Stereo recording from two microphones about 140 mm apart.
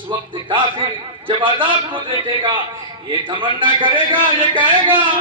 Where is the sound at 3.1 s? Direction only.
35° right (ahead or behind).